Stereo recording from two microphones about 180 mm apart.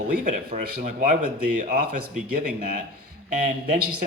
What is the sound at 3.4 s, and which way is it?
Speech, 45° right (ahead or behind).